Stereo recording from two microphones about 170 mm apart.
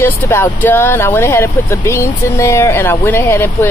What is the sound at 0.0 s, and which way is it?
Speech, 10° left (ahead or behind).